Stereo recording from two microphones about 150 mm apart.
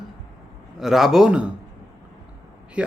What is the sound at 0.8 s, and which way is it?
Speech, centre (ahead or behind).